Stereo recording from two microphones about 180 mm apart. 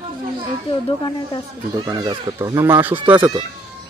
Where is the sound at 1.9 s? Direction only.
25° right (ahead or behind).